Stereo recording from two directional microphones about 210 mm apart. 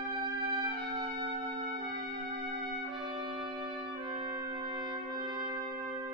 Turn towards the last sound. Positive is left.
turn(degrees=-20)  # may be behind; listen again after turning